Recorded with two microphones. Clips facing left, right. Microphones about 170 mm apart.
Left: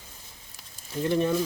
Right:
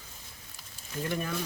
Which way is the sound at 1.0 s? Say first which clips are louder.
Left 9 dB; 30° left (ahead or behind).